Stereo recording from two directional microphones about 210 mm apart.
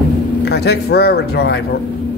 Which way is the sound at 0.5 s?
50° left (ahead or behind).